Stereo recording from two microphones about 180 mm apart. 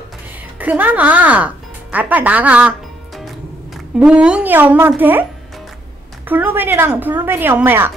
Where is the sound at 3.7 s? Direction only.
5° right (ahead or behind).